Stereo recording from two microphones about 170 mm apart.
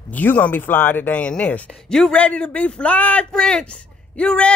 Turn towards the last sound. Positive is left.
turn(degrees=5)  # may be behind; listen again after turning